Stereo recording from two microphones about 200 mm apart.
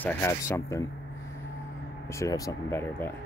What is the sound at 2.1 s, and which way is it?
Speech, 15° left (ahead or behind).